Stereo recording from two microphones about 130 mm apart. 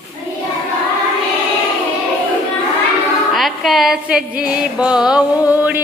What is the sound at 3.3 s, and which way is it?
Music, centre (ahead or behind).